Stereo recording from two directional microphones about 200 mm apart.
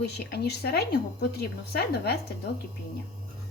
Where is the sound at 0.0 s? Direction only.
55° left (ahead or behind).